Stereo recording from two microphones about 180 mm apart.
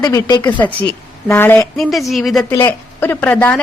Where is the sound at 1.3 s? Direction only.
10° left (ahead or behind).